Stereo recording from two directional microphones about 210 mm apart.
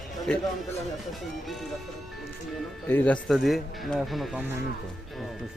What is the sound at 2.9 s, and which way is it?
Speech, 10° left (ahead or behind).